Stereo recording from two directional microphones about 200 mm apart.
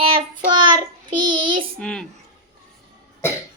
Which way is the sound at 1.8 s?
5° left (ahead or behind).